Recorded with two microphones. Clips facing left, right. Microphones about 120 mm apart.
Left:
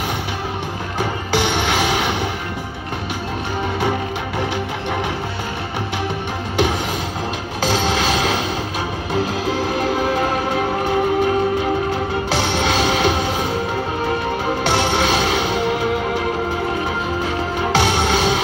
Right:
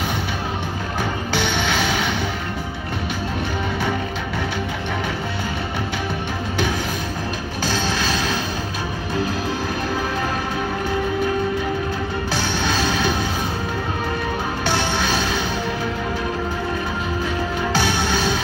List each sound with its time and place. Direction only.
7.6 s music: 90° left
12.3 s music: 85° left
14.7 s music: 75° left (ahead or behind)
17.7 s music: 75° left (ahead or behind)